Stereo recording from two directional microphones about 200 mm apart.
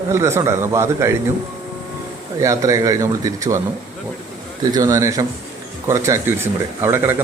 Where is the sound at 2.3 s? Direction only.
15° right (ahead or behind).